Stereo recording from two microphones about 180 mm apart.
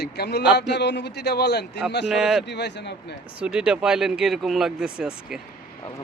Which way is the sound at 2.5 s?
70° left (ahead or behind).